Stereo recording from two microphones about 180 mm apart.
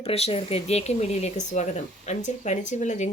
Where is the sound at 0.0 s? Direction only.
35° left (ahead or behind).